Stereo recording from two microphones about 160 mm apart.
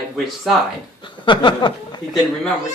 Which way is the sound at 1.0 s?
30° left (ahead or behind).